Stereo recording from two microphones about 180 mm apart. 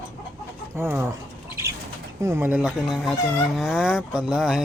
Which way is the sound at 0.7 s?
15° right (ahead or behind).